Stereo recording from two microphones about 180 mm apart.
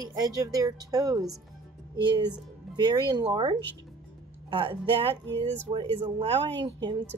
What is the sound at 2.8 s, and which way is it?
Speech, 25° right (ahead or behind).